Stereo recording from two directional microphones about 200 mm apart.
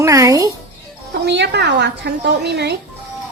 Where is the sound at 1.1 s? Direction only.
55° right (ahead or behind).